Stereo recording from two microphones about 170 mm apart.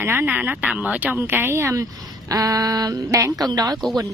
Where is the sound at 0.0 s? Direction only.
10° right (ahead or behind).